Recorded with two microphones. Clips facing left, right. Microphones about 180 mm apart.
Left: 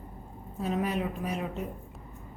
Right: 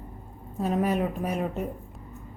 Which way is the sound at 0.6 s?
45° right (ahead or behind).